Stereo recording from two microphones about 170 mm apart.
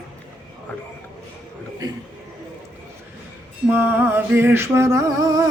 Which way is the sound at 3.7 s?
15° right (ahead or behind).